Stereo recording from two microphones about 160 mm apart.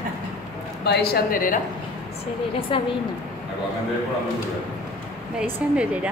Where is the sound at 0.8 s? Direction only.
80° left; by 1.6 s 60° left (ahead or behind).